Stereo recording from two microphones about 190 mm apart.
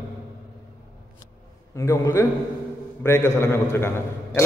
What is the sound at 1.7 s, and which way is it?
Speech, 15° left (ahead or behind).